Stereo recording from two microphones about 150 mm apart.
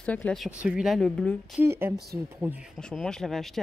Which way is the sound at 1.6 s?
15° right (ahead or behind).